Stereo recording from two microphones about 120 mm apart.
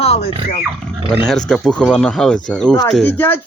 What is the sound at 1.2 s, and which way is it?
Speech, 5° left (ahead or behind).